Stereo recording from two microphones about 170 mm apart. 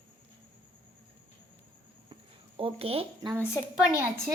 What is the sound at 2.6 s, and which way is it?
Child singing, 35° right (ahead or behind).